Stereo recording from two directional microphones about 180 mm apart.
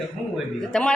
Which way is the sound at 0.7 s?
5° left (ahead or behind).